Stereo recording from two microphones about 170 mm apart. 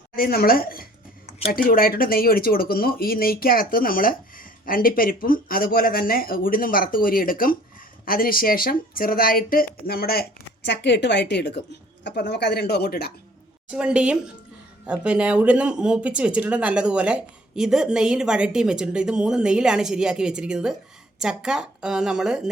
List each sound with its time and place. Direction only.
0.2 s speech: 60° left (ahead or behind)
10.7 s speech: 90° left; by 13.1 s 70° left (ahead or behind)
13.7 s speech: 5° right (ahead or behind)